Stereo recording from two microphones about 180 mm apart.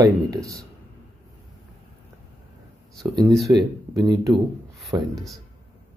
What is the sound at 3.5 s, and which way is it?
Speech, 15° right (ahead or behind).